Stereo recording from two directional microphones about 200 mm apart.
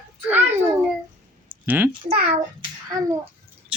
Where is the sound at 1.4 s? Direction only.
10° right (ahead or behind).